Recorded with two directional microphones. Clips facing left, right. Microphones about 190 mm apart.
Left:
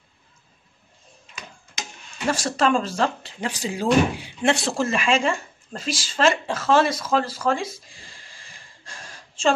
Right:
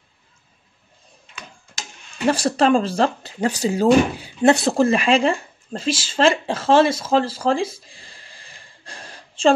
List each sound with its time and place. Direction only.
2.2 s speech: 35° right (ahead or behind)